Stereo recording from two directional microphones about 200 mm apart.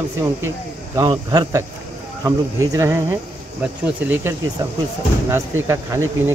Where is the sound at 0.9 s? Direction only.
20° right (ahead or behind).